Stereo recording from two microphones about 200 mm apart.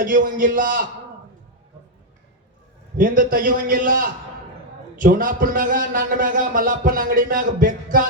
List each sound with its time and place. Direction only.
0.0 s a man's voice: 45° right (ahead or behind)
3.0 s a man's voice: 40° right (ahead or behind)